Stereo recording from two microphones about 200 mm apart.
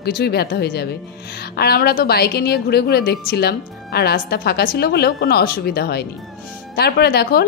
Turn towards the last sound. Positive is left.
turn(degrees=55)  # may be behind; listen again after turning